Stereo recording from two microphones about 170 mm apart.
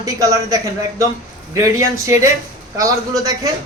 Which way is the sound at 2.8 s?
20° right (ahead or behind).